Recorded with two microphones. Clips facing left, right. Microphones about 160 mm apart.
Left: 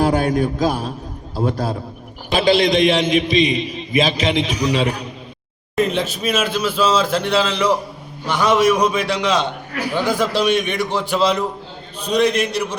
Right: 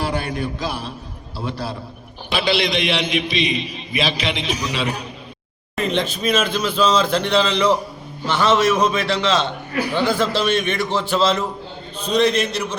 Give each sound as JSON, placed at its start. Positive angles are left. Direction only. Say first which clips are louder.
{"t": 0.0, "sound": "a man's voice", "louder": "left 7 dB", "side_deg": 45}
{"t": 5.8, "sound": "a man's voice", "louder": "left 1 dB", "side_deg": 5}